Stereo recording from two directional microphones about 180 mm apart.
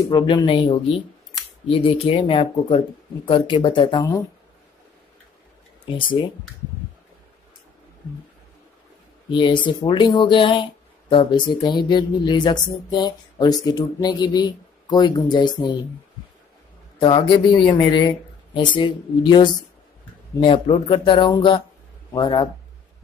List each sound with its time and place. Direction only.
0.1 s speech: 25° left (ahead or behind)
9.3 s speech: 25° left (ahead or behind)
17.0 s speech: 25° left (ahead or behind)